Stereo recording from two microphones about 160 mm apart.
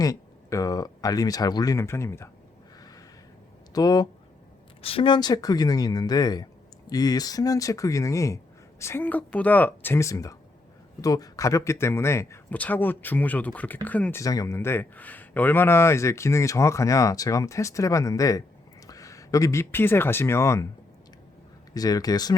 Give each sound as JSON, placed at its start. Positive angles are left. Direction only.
{"t": 0.0, "sound": "speech", "side_deg": 20}
{"t": 3.8, "sound": "speech", "side_deg": 25}
{"t": 4.8, "sound": "speech", "side_deg": 35}
{"t": 21.8, "sound": "speech", "side_deg": 25}